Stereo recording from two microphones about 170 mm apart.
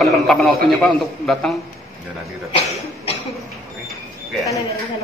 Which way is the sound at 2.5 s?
35° left (ahead or behind).